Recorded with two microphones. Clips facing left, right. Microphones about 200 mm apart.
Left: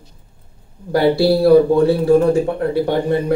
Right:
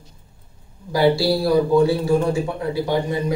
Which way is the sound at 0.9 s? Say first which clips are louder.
Left 4 dB; 60° left (ahead or behind).